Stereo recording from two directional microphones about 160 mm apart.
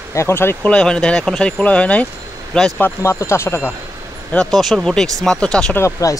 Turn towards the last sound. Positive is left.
turn(degrees=20)  # may be behind; listen again after turning